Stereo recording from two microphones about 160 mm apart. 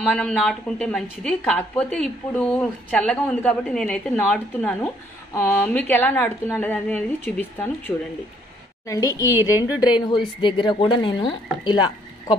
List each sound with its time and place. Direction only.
0.0 s a woman's voice: 5° left (ahead or behind)
4.8 s a woman's voice: 15° left (ahead or behind)
9.2 s a woman's voice: 15° right (ahead or behind)
9.8 s speech: 30° left (ahead or behind)